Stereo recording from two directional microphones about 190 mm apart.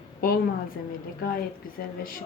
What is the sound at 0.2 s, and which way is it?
Speech, 50° left (ahead or behind).